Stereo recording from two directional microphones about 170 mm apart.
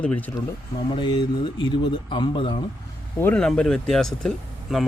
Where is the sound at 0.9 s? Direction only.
25° left (ahead or behind).